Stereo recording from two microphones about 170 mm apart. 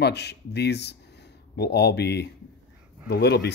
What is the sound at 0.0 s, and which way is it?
Speech, 80° left.